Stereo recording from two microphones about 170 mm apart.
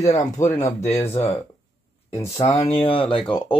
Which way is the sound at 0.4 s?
45° left (ahead or behind).